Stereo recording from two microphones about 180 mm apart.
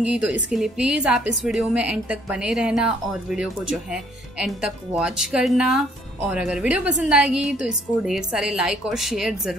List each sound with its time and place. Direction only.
0.0 s a woman's voice: 5° right (ahead or behind)